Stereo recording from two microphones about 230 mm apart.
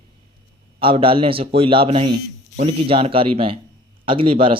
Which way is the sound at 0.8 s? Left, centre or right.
Right.